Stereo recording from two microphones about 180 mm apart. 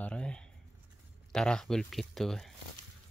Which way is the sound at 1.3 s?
5° left (ahead or behind).